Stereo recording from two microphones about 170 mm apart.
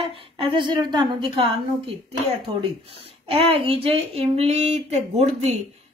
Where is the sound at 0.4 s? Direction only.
30° right (ahead or behind).